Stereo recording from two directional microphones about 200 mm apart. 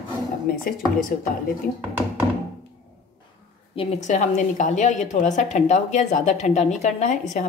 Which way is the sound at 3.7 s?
35° left (ahead or behind).